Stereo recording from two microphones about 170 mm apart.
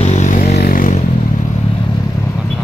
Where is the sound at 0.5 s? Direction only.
60° left (ahead or behind).